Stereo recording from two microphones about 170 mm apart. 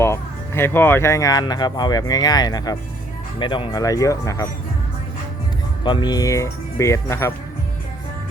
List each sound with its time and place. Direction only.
0.0 s speech: 15° left (ahead or behind)
5.8 s speech: 25° left (ahead or behind)